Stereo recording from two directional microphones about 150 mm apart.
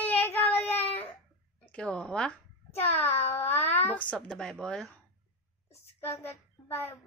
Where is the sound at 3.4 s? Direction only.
15° left (ahead or behind).